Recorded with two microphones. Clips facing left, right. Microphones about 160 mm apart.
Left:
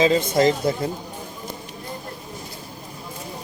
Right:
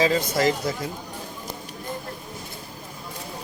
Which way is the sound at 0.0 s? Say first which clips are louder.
Left 4 dB; 25° left (ahead or behind).